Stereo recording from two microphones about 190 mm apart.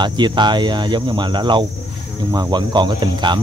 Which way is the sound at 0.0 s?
25° right (ahead or behind).